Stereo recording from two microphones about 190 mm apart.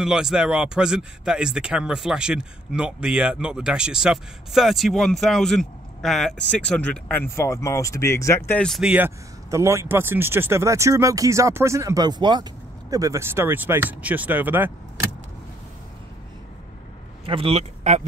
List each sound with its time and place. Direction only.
0.0 s speech: 5° right (ahead or behind); by 8.4 s 15° left (ahead or behind)
8.5 s speech: 5° left (ahead or behind)
17.3 s speech: 30° right (ahead or behind)